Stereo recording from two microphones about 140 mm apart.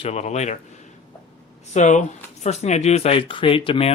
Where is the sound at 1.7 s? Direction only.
60° left (ahead or behind).